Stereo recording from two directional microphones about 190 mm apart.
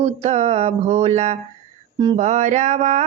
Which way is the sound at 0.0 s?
35° right (ahead or behind).